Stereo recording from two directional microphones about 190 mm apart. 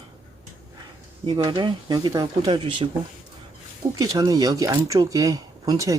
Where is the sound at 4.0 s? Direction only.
20° right (ahead or behind).